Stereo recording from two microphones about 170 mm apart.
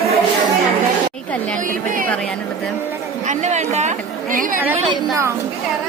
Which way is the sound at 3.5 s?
45° right (ahead or behind).